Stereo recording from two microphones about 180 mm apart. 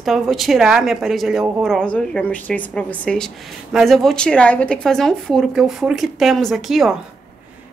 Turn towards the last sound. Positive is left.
turn(degrees=0)  # may be behind; listen again after turning